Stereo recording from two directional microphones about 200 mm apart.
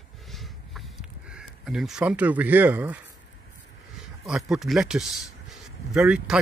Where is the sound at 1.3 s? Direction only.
Centre (ahead or behind).